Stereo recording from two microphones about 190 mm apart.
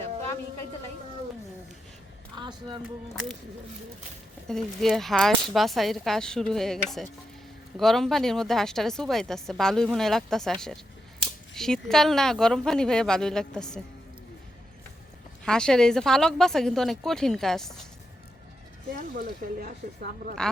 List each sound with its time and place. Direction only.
2.3 s speech: 25° right (ahead or behind)
4.4 s a woman's voice: centre (ahead or behind)
15.4 s a woman's voice: 5° left (ahead or behind)
18.9 s speech: 50° right (ahead or behind)